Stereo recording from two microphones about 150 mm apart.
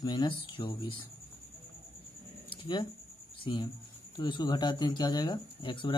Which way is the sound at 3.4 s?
30° left (ahead or behind).